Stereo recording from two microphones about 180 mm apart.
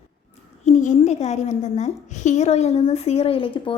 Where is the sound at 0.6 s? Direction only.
40° left (ahead or behind).